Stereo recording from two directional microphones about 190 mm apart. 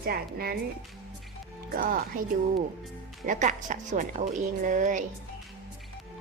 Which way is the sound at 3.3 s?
40° right (ahead or behind).